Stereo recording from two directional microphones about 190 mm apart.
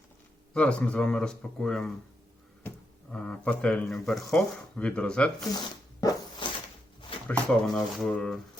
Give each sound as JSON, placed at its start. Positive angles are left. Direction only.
{"t": 0.5, "sound": "speech", "side_deg": 5}
{"t": 6.0, "sound": "zipper", "side_deg": 20}
{"t": 7.3, "sound": "speech", "side_deg": 0}